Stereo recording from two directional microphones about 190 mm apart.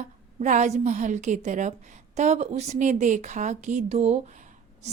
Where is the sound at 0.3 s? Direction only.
40° right (ahead or behind).